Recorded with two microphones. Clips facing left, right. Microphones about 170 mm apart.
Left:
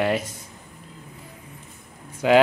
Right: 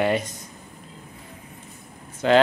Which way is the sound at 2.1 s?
10° left (ahead or behind).